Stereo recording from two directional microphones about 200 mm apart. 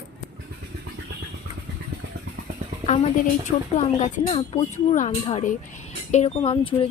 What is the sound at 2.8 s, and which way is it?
Speech, 35° left (ahead or behind).